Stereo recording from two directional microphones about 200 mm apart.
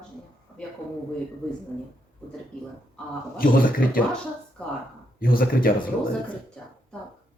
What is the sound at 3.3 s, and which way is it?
Speech, 45° left (ahead or behind).